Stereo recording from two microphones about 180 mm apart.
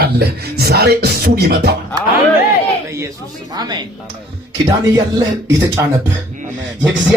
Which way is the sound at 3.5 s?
25° right (ahead or behind).